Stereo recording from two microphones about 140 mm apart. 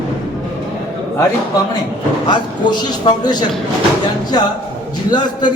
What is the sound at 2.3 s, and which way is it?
A man's voice, 30° left (ahead or behind).